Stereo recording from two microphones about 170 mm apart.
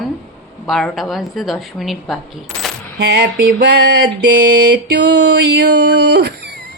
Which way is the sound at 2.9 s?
65° right (ahead or behind).